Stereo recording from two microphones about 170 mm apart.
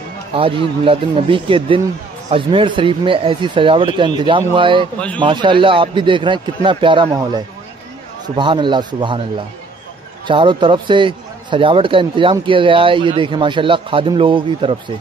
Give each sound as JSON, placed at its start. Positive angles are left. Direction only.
{"t": 0.3, "sound": "a man's voice", "side_deg": -30}
{"t": 10.2, "sound": "a man's voice", "side_deg": -30}